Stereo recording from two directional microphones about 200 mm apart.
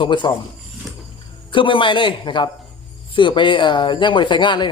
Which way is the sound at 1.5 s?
25° left (ahead or behind).